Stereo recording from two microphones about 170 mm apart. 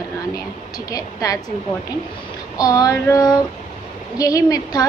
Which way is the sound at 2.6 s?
20° left (ahead or behind).